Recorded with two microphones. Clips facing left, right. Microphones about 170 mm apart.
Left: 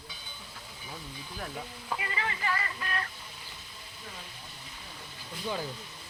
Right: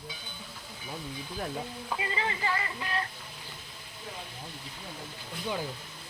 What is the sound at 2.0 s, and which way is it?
Speech, 25° right (ahead or behind).